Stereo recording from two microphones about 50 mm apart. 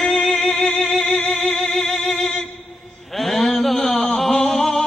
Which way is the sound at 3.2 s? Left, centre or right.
Centre.